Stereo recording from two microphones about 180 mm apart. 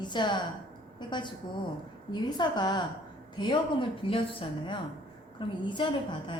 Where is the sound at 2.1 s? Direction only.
25° left (ahead or behind).